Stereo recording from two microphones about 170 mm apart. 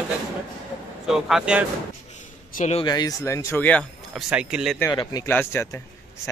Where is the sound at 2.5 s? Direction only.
45° left (ahead or behind).